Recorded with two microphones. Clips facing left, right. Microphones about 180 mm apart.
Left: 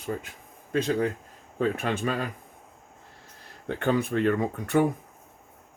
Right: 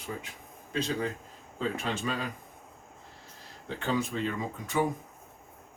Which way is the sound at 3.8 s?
60° left (ahead or behind).